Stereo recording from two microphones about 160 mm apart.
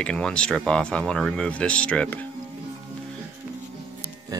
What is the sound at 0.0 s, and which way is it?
Speech, 5° left (ahead or behind).